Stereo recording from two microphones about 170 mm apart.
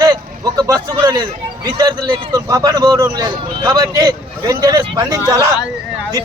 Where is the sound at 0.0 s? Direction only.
20° right (ahead or behind).